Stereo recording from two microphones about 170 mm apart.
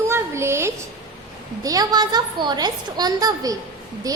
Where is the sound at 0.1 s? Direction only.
15° right (ahead or behind).